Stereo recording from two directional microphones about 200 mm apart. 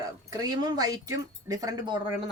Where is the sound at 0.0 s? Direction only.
20° right (ahead or behind).